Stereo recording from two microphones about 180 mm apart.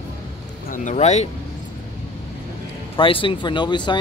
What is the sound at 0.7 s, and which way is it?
Speech, 45° left (ahead or behind).